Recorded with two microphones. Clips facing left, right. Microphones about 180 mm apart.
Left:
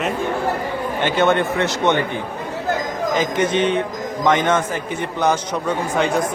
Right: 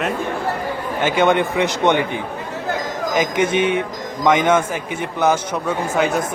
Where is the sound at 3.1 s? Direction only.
10° right (ahead or behind).